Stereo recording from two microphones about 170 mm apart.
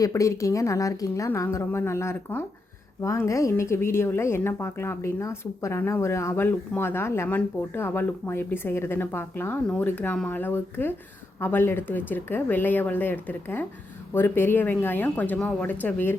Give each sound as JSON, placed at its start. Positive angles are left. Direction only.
{"t": 0.0, "sound": "a woman's voice", "side_deg": 15}